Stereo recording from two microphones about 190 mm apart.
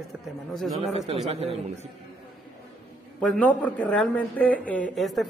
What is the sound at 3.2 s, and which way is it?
Speech, 5° left (ahead or behind).